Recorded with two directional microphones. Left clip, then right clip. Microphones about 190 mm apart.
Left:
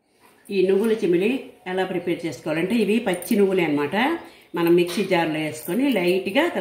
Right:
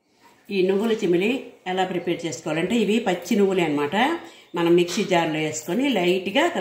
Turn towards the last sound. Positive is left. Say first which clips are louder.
# even
turn(degrees=0)  # may be behind; listen again after turning